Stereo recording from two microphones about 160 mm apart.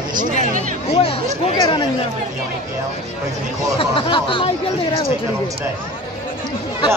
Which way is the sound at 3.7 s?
35° left (ahead or behind).